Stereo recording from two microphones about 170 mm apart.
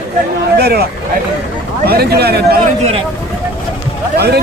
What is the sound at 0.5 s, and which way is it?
A man's voice, 70° right (ahead or behind).